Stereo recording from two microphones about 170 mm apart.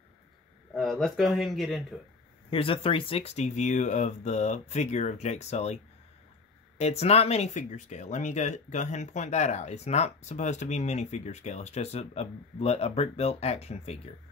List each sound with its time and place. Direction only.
0.7 s speech: centre (ahead or behind)
2.5 s speech: 35° left (ahead or behind)
6.8 s speech: 40° left (ahead or behind)